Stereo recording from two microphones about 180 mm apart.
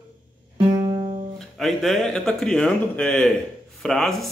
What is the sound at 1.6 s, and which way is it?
Speech, centre (ahead or behind).